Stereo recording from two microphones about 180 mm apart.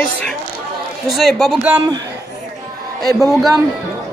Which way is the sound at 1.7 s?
20° right (ahead or behind).